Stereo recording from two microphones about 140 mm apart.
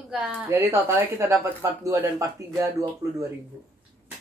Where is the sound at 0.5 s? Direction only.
20° right (ahead or behind).